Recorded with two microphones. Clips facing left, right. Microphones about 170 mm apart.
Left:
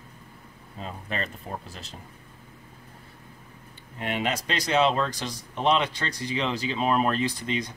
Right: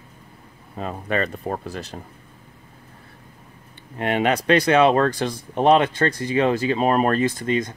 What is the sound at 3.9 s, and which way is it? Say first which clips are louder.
Speech: right 8 dB; 60° right (ahead or behind).